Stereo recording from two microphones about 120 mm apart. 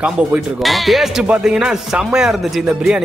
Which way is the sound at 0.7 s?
Centre (ahead or behind).